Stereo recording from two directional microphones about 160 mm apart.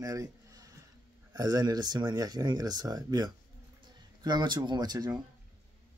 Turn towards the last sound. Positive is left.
turn(degrees=-25)  # may be behind; listen again after turning